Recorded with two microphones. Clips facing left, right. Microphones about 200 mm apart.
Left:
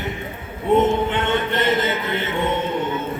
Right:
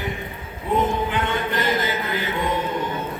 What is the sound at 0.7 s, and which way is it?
Mantra, 25° left (ahead or behind).